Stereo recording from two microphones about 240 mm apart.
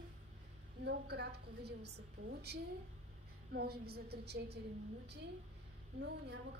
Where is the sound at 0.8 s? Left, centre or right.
Right.